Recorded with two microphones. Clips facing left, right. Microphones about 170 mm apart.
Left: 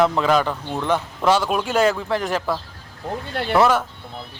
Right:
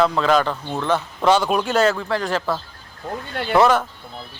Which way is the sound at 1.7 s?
15° left (ahead or behind).